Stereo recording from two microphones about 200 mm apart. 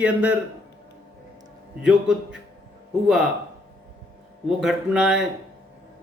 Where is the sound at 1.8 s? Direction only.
5° right (ahead or behind).